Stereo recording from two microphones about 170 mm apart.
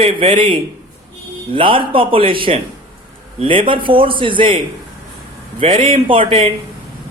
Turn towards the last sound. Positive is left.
turn(degrees=-30)  # may be behind; listen again after turning